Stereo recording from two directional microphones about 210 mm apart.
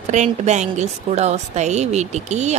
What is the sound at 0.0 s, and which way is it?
A woman's voice, 35° right (ahead or behind).